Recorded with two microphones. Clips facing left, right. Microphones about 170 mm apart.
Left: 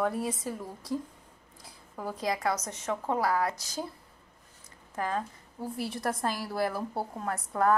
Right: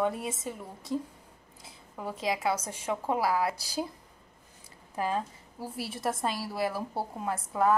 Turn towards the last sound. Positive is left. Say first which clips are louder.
# even
turn(degrees=-5)  # may be behind; listen again after turning